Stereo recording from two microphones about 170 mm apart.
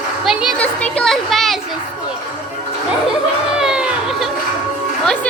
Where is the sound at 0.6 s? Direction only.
5° left (ahead or behind).